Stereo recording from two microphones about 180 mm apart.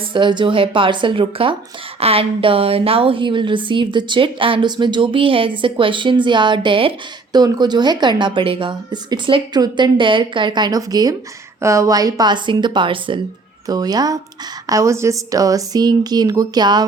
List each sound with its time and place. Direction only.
0.1 s a woman's voice: 25° right (ahead or behind)